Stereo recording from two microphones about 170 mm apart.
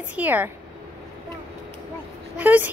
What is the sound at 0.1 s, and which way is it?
Speech, 10° right (ahead or behind).